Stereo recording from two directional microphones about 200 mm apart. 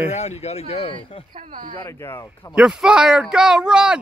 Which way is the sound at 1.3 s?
40° right (ahead or behind).